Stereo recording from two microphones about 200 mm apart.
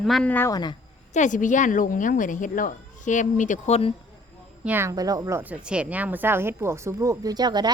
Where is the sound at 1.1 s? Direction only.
40° left (ahead or behind).